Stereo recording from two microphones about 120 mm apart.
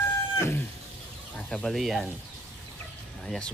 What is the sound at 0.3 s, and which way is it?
Chicken, 20° left (ahead or behind).